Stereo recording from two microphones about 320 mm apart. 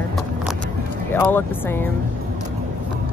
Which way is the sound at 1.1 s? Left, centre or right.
Centre.